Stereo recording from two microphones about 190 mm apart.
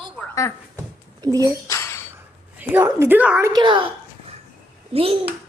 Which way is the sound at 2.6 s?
10° right (ahead or behind).